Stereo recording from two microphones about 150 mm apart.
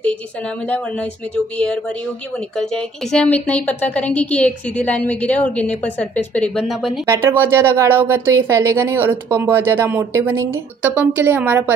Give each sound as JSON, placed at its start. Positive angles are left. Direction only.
{"t": 0.0, "sound": "a woman's voice", "side_deg": 5}
{"t": 7.1, "sound": "speech", "side_deg": -15}